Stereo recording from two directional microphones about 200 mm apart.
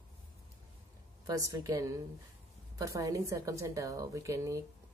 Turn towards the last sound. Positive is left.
turn(degrees=-15)  # may be behind; listen again after turning